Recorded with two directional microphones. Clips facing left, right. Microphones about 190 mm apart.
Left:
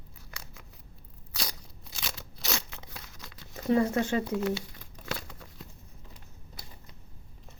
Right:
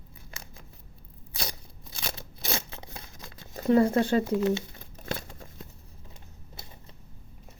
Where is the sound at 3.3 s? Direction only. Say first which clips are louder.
Right 4 dB; 45° right (ahead or behind).